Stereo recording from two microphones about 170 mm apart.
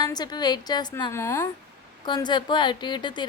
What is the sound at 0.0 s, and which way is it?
A woman's voice, 25° left (ahead or behind).